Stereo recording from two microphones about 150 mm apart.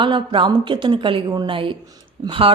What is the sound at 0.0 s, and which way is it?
A woman's voice, 35° right (ahead or behind).